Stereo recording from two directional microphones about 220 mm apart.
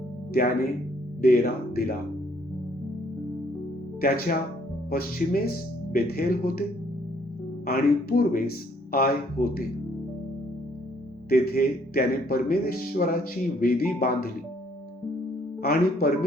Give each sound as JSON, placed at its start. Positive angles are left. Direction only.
{"t": 1.2, "sound": "a man's voice", "side_deg": 45}
{"t": 4.0, "sound": "a man's voice", "side_deg": 40}
{"t": 11.3, "sound": "a man's voice", "side_deg": 45}
{"t": 15.6, "sound": "speech", "side_deg": 40}